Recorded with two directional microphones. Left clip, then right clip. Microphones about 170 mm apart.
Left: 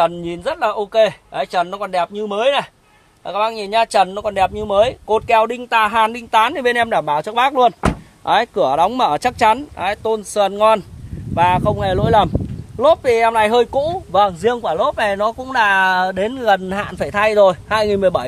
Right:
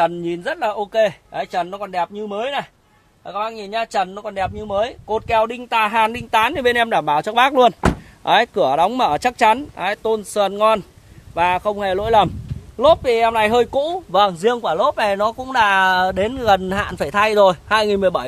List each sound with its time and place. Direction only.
0.0 s speech: 10° left (ahead or behind); by 2.7 s 60° left (ahead or behind)
3.3 s speech: 75° left (ahead or behind); by 5.6 s 35° left (ahead or behind)
5.9 s speech: centre (ahead or behind)
7.2 s speech: 25° right (ahead or behind)
8.3 s speech: 15° right (ahead or behind)
8.6 s speech: 5° right (ahead or behind)
13.7 s speech: 15° right (ahead or behind)